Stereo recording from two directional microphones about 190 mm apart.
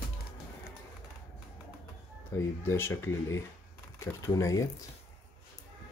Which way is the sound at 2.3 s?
15° left (ahead or behind).